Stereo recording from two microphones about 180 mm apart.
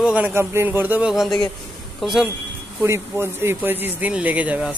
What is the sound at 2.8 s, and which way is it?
Speech, 15° right (ahead or behind).